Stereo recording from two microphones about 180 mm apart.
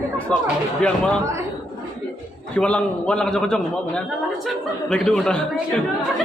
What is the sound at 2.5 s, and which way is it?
A man's voice, 5° left (ahead or behind).